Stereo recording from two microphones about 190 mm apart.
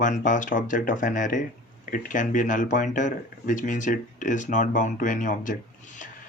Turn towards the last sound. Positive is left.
turn(degrees=45)  # may be behind; listen again after turning